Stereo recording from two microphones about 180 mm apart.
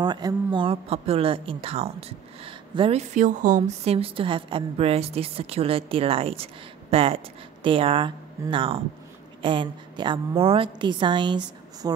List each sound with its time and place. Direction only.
0.0 s a woman's voice: 25° right (ahead or behind)